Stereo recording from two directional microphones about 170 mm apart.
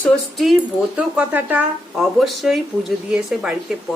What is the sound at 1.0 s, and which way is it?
Speech, 10° right (ahead or behind).